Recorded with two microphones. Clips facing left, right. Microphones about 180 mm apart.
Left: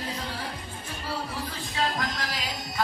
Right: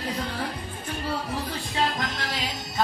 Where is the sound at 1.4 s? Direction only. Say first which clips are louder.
Right 3 dB; 25° right (ahead or behind).